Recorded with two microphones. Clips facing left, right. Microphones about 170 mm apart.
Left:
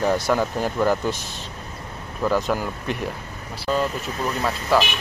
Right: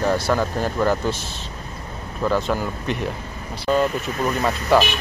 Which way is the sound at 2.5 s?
5° left (ahead or behind).